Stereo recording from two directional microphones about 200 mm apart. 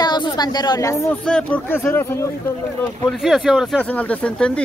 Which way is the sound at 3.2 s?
Centre (ahead or behind).